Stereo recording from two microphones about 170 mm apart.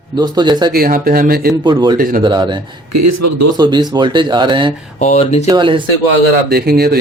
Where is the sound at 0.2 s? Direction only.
25° right (ahead or behind).